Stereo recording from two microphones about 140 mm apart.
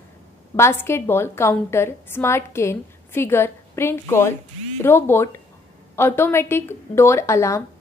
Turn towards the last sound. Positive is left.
turn(degrees=20)  # may be behind; listen again after turning